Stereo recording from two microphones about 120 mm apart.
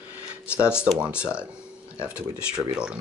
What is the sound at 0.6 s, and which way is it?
Speech, 20° left (ahead or behind).